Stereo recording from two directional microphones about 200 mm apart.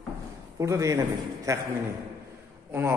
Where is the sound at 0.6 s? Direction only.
15° right (ahead or behind).